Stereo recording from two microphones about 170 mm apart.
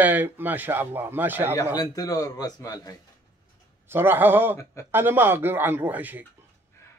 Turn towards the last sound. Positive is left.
turn(degrees=-10)  # may be behind; listen again after turning